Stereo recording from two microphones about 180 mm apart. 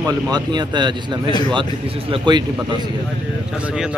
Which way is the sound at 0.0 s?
25° right (ahead or behind).